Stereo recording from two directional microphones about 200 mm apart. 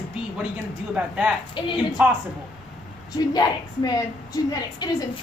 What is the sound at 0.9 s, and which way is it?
Speech, 5° right (ahead or behind).